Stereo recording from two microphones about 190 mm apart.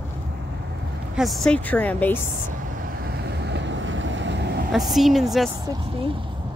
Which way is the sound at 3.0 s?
60° right (ahead or behind).